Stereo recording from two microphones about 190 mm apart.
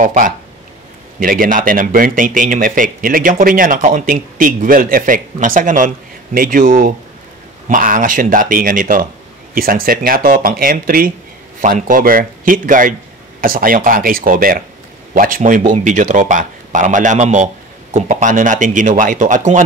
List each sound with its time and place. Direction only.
0.0 s a man's voice: 45° right (ahead or behind)